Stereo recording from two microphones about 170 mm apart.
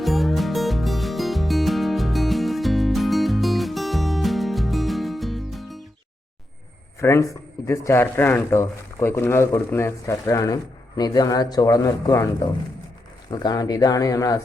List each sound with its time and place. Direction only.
0.0 s music: centre (ahead or behind)
7.0 s speech: 15° left (ahead or behind)
13.3 s speech: 25° left (ahead or behind)